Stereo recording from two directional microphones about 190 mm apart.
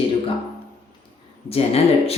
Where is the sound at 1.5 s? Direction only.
30° left (ahead or behind).